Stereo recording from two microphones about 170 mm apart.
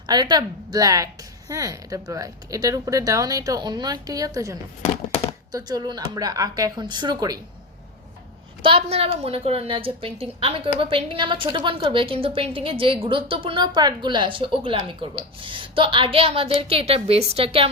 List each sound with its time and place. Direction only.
0.1 s a woman's voice: 25° right (ahead or behind)
8.6 s a woman's voice: 35° right (ahead or behind)